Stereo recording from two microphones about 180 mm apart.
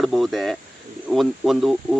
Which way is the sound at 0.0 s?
Centre (ahead or behind).